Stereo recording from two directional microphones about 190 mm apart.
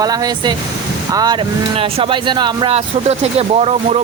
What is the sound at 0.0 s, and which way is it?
Speech, 20° right (ahead or behind).